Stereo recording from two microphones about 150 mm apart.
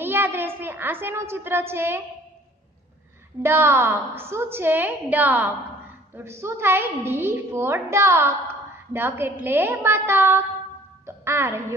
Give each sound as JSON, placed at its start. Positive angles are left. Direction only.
{"t": 0.0, "sound": "a woman's voice", "side_deg": -15}
{"t": 3.4, "sound": "a woman's voice", "side_deg": -15}
{"t": 11.1, "sound": "music", "side_deg": -15}